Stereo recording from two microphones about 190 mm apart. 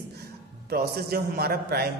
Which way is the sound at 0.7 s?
55° right (ahead or behind).